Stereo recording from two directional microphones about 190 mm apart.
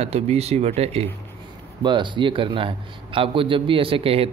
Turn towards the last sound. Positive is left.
turn(degrees=-30)  # may be behind; listen again after turning